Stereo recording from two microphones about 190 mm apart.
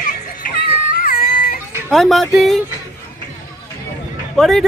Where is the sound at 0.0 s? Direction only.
45° left (ahead or behind).